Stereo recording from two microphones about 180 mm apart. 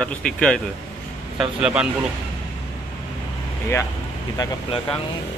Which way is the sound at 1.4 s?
5° right (ahead or behind).